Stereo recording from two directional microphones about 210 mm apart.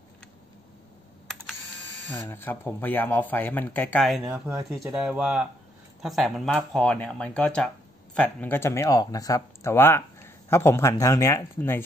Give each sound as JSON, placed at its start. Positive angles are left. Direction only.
{"t": 1.2, "sound": "typing", "side_deg": 0}
{"t": 2.0, "sound": "speech", "side_deg": 10}
{"t": 4.2, "sound": "speech", "side_deg": -15}
{"t": 4.8, "sound": "speech", "side_deg": -5}